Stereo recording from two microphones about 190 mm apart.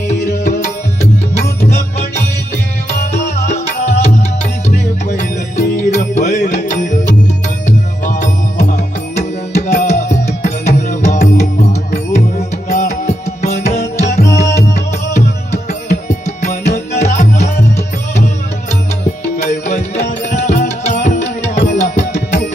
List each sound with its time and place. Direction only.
0.1 s music: 40° left (ahead or behind)
2.9 s music: 45° left (ahead or behind)
5.5 s music: 40° left (ahead or behind)
16.0 s music: 40° left (ahead or behind)
19.4 s music: 35° left (ahead or behind)